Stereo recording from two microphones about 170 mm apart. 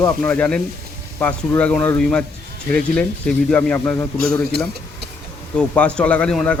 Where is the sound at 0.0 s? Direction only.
5° left (ahead or behind).